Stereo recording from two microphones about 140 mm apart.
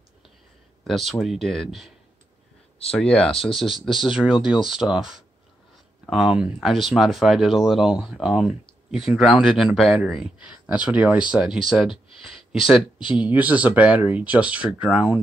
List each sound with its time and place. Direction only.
0.8 s speech: centre (ahead or behind)
2.9 s speech: 10° left (ahead or behind)
13.0 s speech: 35° left (ahead or behind)
13.3 s speech: 10° right (ahead or behind)